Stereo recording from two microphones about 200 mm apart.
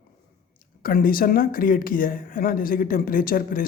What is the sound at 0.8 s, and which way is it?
Speech, 45° left (ahead or behind).